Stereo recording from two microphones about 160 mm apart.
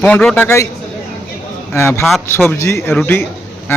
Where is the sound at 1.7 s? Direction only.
15° left (ahead or behind).